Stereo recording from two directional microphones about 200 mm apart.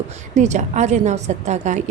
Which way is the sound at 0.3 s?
35° right (ahead or behind).